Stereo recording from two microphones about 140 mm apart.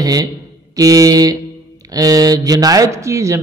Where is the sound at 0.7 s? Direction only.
25° right (ahead or behind).